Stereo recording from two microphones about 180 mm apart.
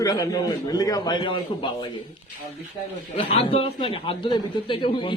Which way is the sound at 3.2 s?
30° left (ahead or behind).